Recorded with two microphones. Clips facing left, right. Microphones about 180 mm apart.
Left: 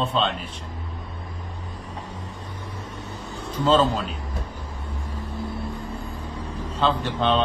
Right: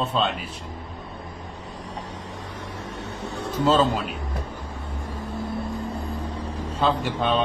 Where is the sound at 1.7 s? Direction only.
85° right.